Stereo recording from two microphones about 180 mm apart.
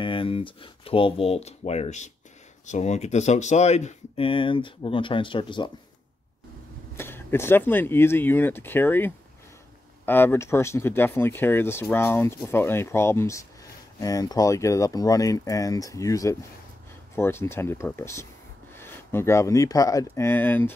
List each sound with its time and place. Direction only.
0.0 s speech: 30° left (ahead or behind)
7.0 s speech: 10° left (ahead or behind)